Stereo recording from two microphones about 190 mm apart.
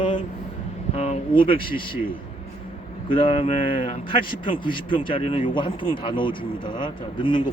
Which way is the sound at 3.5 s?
45° left (ahead or behind).